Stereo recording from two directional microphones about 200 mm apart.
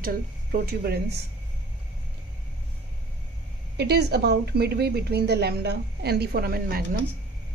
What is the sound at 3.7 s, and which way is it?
A woman's voice, 55° right (ahead or behind).